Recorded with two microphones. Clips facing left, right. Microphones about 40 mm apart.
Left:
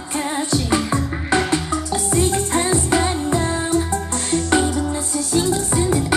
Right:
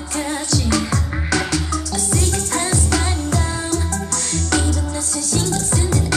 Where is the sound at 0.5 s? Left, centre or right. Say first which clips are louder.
Left 1 dB; left.